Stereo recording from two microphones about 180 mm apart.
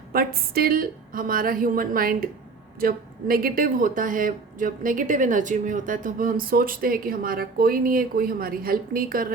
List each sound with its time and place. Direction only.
0.1 s speech: 55° right (ahead or behind)